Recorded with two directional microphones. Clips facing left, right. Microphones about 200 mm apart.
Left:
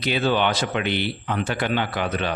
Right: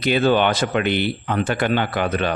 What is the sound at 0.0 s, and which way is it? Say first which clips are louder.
Speech: right 4 dB; 50° right (ahead or behind).